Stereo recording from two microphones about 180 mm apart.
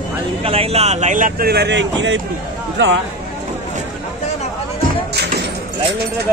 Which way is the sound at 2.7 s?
80° right.